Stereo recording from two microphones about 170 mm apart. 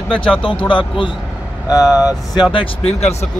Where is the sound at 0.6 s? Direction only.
30° left (ahead or behind).